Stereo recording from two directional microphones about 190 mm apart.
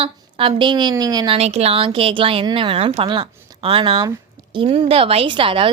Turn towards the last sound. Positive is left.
turn(degrees=-25)  # may be behind; listen again after turning